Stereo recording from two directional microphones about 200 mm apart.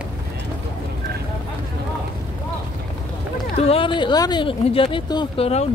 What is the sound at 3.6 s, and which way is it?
Speech, 30° left (ahead or behind).